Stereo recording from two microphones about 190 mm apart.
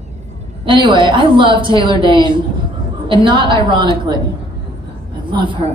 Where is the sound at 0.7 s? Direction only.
25° right (ahead or behind).